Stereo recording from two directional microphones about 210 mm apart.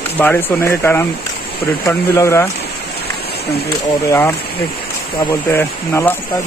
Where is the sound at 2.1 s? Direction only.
15° left (ahead or behind).